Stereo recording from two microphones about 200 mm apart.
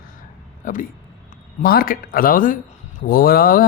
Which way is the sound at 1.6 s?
45° left (ahead or behind).